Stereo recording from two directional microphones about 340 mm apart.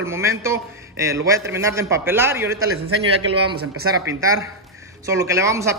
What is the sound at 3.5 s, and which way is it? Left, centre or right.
Speech, right.